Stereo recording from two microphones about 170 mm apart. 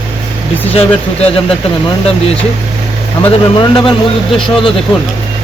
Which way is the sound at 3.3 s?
30° left (ahead or behind).